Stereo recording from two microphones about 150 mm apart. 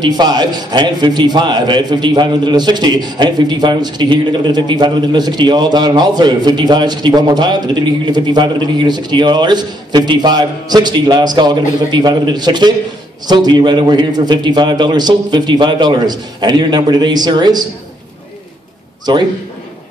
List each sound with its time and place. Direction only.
0.0 s a man's voice: 30° right (ahead or behind)
19.1 s a man's voice: 30° right (ahead or behind)